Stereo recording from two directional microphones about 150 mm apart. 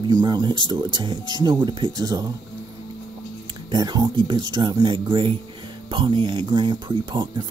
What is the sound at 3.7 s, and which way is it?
Speech, 30° right (ahead or behind).